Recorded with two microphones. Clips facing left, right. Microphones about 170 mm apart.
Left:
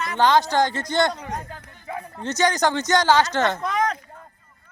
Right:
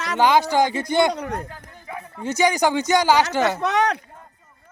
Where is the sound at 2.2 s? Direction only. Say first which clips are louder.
Right 2 dB; 10° right (ahead or behind).